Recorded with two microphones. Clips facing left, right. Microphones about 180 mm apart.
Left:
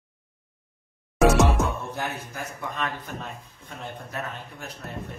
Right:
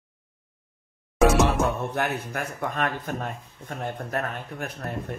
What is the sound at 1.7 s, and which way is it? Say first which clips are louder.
A man's voice: right 4 dB; 65° right (ahead or behind).